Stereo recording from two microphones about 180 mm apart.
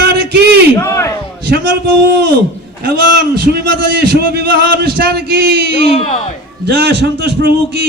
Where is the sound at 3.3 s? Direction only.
65° right (ahead or behind).